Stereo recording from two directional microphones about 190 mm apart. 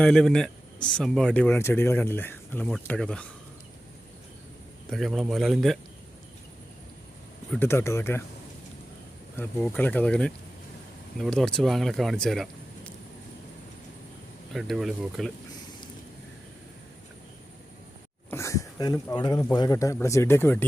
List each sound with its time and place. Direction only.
0.0 s a man's voice: 5° left (ahead or behind)
4.9 s speech: centre (ahead or behind)
7.5 s a man's voice: 10° left (ahead or behind)
9.3 s a man's voice: 5° left (ahead or behind)
14.5 s speech: centre (ahead or behind)
18.3 s a man's voice: 15° left (ahead or behind)